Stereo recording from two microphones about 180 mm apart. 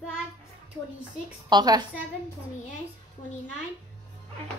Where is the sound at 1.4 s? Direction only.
20° right (ahead or behind).